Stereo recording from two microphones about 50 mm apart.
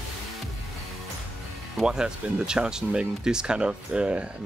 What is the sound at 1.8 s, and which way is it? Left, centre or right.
Speech, centre.